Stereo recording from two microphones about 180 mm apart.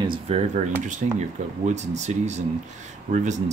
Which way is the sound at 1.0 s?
45° right (ahead or behind).